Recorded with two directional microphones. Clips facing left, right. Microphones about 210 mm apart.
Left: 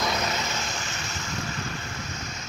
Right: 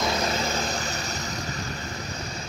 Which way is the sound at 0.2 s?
30° right (ahead or behind).